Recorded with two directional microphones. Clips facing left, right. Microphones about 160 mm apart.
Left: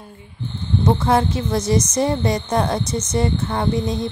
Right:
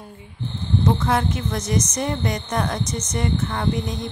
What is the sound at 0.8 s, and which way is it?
Speech, 35° left (ahead or behind).